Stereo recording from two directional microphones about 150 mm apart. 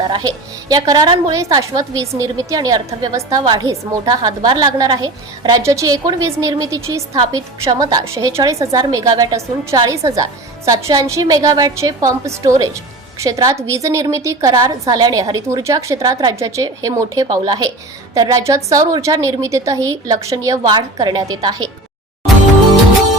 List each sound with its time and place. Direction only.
0.7 s a woman's voice: 25° right (ahead or behind)